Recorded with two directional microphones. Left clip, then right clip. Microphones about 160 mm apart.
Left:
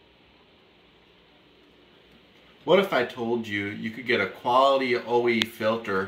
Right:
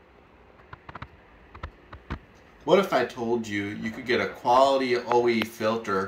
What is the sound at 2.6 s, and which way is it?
Speech, centre (ahead or behind).